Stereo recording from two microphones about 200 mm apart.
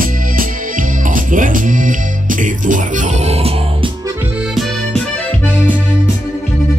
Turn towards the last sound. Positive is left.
turn(degrees=5)  # may be behind; listen again after turning